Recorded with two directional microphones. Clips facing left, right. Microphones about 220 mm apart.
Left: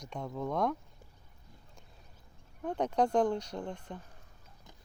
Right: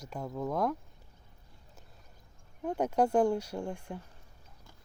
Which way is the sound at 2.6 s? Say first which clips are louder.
Right 1 dB; 5° right (ahead or behind).